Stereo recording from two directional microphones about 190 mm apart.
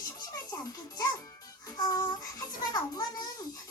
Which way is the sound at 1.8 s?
20° left (ahead or behind).